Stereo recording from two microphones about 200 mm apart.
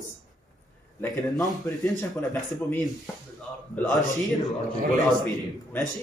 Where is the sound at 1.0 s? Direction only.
20° left (ahead or behind).